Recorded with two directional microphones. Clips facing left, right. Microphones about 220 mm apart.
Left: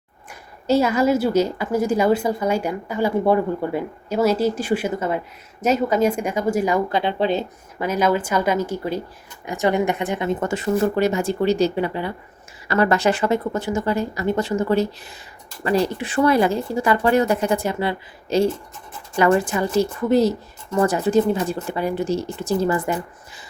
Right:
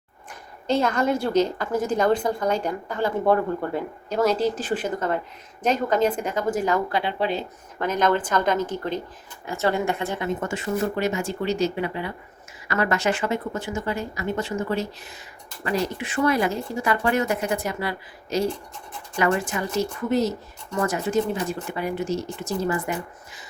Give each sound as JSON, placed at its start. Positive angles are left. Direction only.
{"t": 0.7, "sound": "a woman's voice", "side_deg": 5}
{"t": 6.9, "sound": "speech", "side_deg": 25}
{"t": 7.8, "sound": "a woman's voice", "side_deg": 10}
{"t": 10.2, "sound": "speech", "side_deg": 35}